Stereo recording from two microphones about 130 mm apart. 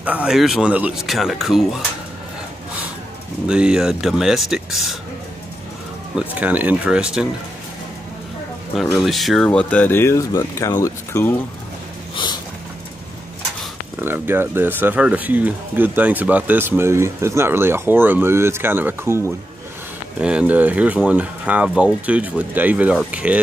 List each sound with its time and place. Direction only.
0.0 s speech: 10° right (ahead or behind)
3.4 s speech: 5° right (ahead or behind)
6.1 s speech: 10° right (ahead or behind)
8.9 s speech: centre (ahead or behind); by 11.3 s 25° left (ahead or behind)
14.0 s speech: 15° right (ahead or behind)
20.2 s speech: 5° right (ahead or behind)